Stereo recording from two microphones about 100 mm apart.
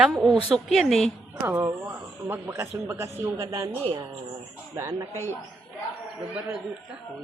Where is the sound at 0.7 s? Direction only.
Centre (ahead or behind).